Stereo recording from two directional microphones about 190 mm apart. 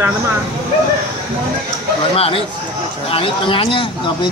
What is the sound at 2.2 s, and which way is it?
Speech, 30° left (ahead or behind).